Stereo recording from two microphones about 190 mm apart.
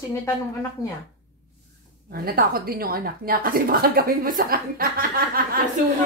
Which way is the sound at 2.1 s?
50° right (ahead or behind).